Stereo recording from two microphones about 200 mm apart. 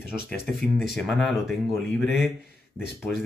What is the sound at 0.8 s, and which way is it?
Speech, centre (ahead or behind).